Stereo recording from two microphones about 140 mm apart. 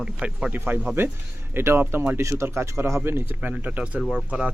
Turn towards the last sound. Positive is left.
turn(degrees=-5)  # may be behind; listen again after turning